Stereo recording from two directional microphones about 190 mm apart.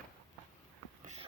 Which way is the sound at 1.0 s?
35° right (ahead or behind).